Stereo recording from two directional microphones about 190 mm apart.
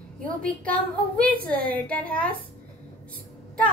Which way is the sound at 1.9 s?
5° left (ahead or behind).